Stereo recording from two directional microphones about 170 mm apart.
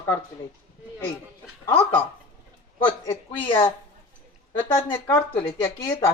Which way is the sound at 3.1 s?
30° left (ahead or behind).